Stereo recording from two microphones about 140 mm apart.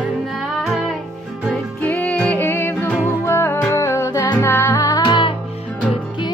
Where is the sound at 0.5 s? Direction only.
Centre (ahead or behind).